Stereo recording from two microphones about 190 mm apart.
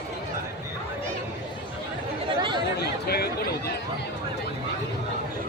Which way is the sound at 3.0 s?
55° left (ahead or behind).